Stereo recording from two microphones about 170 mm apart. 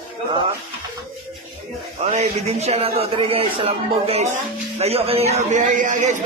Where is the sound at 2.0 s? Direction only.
45° right (ahead or behind).